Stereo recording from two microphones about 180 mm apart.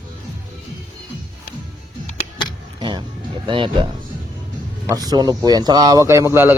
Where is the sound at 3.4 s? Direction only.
25° right (ahead or behind).